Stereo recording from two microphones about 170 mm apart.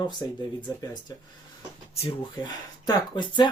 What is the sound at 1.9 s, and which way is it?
Speech, 35° left (ahead or behind).